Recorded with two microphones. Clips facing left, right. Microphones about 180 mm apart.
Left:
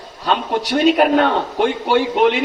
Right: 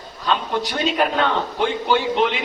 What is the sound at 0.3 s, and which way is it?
A man's voice, 40° left (ahead or behind).